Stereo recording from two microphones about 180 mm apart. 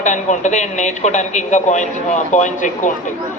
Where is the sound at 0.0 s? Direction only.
45° left (ahead or behind).